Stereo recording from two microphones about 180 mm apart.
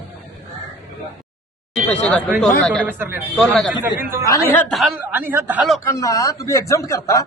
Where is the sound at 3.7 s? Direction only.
10° right (ahead or behind).